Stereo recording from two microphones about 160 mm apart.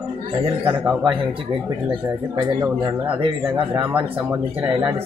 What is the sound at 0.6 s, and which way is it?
Speech, 15° right (ahead or behind).